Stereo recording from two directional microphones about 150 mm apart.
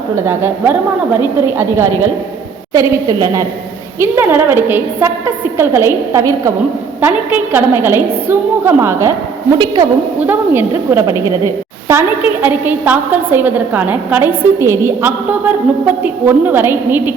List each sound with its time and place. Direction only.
0.2 s a woman's voice: 15° right (ahead or behind)